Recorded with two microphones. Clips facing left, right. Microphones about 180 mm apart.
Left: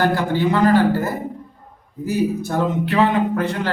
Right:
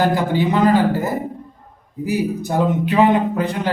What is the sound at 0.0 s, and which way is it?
Speech, 15° right (ahead or behind).